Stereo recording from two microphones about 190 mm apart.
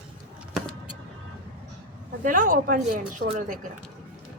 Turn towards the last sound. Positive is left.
turn(degrees=-45)  # may be behind; listen again after turning